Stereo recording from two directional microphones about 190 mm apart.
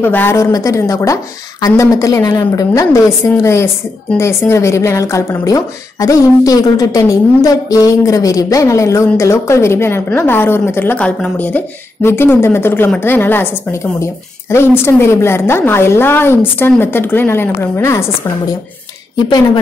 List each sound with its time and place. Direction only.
0.0 s a woman's voice: 10° left (ahead or behind)
19.2 s speech: 25° left (ahead or behind)